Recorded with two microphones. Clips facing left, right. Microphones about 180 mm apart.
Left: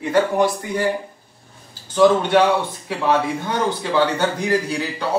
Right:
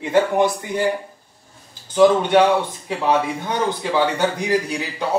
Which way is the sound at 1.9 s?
15° right (ahead or behind).